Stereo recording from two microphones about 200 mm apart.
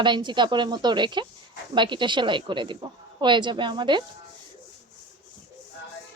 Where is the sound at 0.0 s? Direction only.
20° right (ahead or behind).